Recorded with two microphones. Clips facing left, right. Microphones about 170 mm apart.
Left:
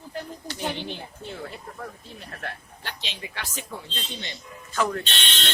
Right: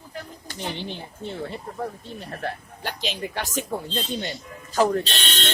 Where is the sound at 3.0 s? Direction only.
50° right (ahead or behind).